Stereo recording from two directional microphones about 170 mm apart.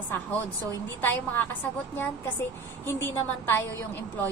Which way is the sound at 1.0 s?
10° left (ahead or behind).